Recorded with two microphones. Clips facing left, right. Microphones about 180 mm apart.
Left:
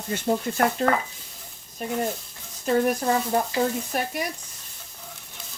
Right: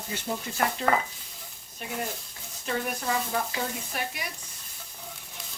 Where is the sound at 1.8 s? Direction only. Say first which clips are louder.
Left 7 dB; 40° left (ahead or behind).